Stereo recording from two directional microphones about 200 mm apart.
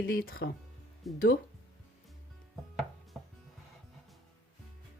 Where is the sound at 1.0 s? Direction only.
Centre (ahead or behind).